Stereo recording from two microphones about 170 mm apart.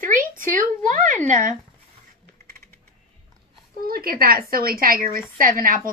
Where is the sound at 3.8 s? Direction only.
60° right (ahead or behind).